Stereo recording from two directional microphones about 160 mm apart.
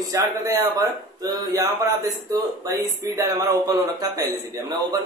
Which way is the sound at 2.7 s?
20° right (ahead or behind).